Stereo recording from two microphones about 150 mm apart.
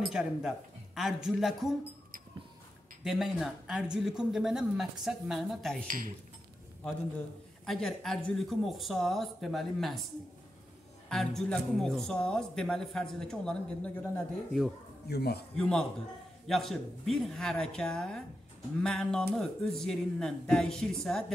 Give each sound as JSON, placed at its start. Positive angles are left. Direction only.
{"t": 0.0, "sound": "speech", "side_deg": -5}
{"t": 3.0, "sound": "speech", "side_deg": 0}
{"t": 7.6, "sound": "speech", "side_deg": 0}
{"t": 11.1, "sound": "speech", "side_deg": 5}
{"t": 15.0, "sound": "a man's voice", "side_deg": 90}
{"t": 15.5, "sound": "speech", "side_deg": 5}